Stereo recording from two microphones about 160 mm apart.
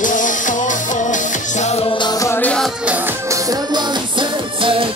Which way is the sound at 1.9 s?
30° left (ahead or behind).